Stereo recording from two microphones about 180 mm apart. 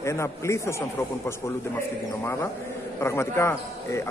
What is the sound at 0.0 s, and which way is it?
Speech, 15° left (ahead or behind).